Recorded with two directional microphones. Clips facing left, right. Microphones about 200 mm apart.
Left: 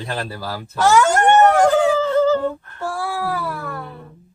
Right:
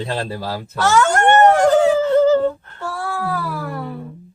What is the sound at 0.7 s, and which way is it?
Speech, 10° left (ahead or behind).